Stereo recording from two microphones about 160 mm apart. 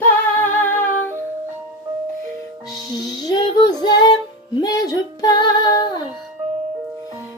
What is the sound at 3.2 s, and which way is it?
Female singing, 25° left (ahead or behind).